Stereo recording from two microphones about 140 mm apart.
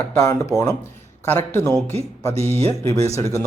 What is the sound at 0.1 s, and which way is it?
Speech, 20° left (ahead or behind).